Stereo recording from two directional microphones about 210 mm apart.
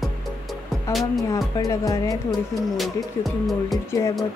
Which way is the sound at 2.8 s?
Centre (ahead or behind).